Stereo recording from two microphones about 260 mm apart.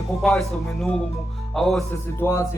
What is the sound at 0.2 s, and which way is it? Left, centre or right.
A man's voice, centre.